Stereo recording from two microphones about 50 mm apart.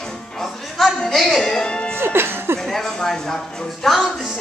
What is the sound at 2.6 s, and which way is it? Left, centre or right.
A woman's voice, centre.